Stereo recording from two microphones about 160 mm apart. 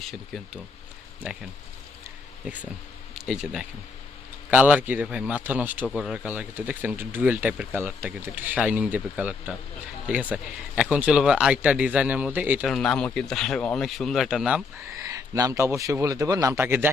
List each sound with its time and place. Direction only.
0.0 s speech: centre (ahead or behind)
3.2 s speech: 5° right (ahead or behind)
5.8 s speech: 5° left (ahead or behind)
6.2 s speech: 10° right (ahead or behind)
12.7 s speech: 5° left (ahead or behind)
15.1 s a man's voice: 20° right (ahead or behind)